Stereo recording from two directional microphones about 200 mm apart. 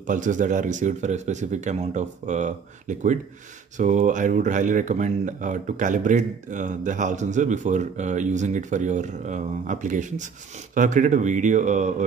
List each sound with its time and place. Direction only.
0.0 s speech: 40° right (ahead or behind)